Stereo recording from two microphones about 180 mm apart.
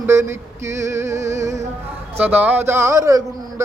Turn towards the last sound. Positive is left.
turn(degrees=-20)  # may be behind; listen again after turning